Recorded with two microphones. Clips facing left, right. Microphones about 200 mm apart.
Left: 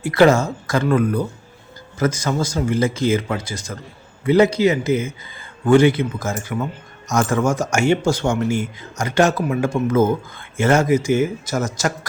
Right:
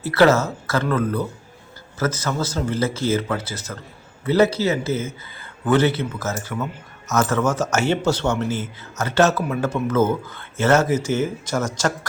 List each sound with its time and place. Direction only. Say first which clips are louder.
0.0 s speech: left 2 dB; 15° left (ahead or behind)